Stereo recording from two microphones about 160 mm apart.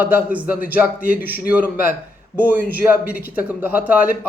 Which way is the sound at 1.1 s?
70° left (ahead or behind).